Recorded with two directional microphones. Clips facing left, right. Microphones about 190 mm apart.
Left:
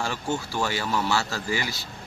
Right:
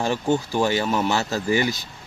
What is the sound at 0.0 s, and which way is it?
Speech, 15° right (ahead or behind).